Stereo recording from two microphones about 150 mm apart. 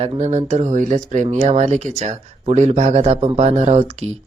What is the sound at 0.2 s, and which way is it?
Speech, 50° right (ahead or behind).